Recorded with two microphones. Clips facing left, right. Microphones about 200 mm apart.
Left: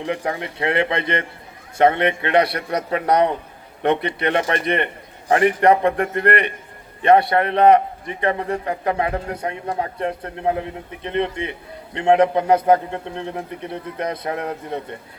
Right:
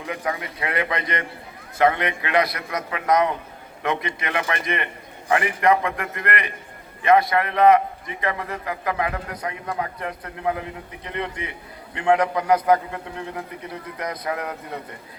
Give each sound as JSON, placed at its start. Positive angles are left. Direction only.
{"t": 0.0, "sound": "a man's voice", "side_deg": 30}